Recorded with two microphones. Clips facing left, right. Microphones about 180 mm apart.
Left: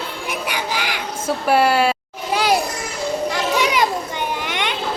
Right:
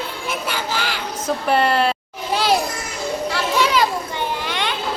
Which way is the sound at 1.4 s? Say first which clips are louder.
Left 2 dB; 5° left (ahead or behind).